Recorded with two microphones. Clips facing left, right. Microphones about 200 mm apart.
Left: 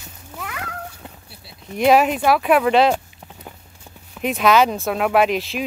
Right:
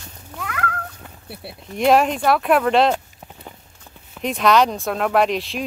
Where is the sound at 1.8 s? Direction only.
Centre (ahead or behind).